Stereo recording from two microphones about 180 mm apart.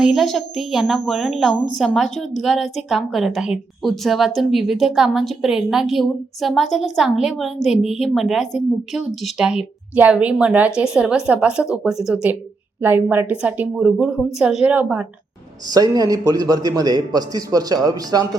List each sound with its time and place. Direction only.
0.0 s a woman's voice: centre (ahead or behind)
15.6 s a man's voice: 20° right (ahead or behind)